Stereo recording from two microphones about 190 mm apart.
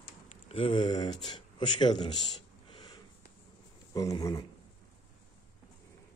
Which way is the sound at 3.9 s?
15° left (ahead or behind).